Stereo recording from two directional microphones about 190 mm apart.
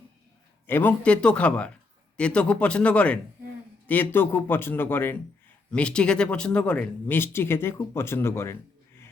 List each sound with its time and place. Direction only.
0.7 s speech: 10° left (ahead or behind)